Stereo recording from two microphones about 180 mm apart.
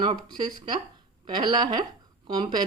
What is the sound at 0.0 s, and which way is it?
Speech, 25° right (ahead or behind).